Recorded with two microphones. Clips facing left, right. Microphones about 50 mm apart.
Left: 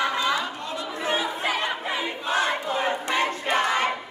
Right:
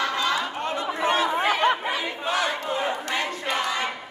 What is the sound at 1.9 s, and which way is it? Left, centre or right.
Crowd, centre.